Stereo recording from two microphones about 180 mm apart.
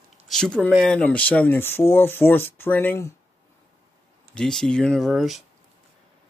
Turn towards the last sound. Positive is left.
turn(degrees=0)  # may be behind; listen again after turning